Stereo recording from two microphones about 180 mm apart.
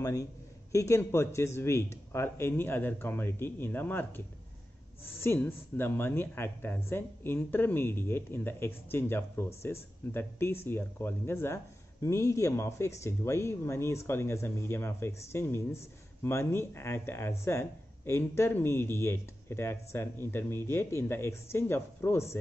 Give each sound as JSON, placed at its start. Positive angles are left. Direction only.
{"t": 0.0, "sound": "speech", "side_deg": 20}
{"t": 5.2, "sound": "speech", "side_deg": 10}